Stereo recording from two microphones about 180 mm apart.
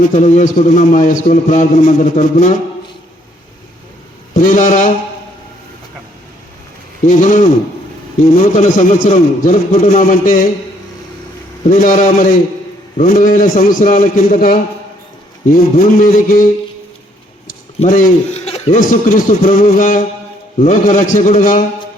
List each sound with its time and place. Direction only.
0.1 s a man's voice: 40° left (ahead or behind)
4.4 s a man's voice: 50° left (ahead or behind)
7.0 s a man's voice: 45° left (ahead or behind)
11.7 s a man's voice: 50° left (ahead or behind)
15.8 s a man's voice: 50° left (ahead or behind)
17.7 s a man's voice: 50° left (ahead or behind)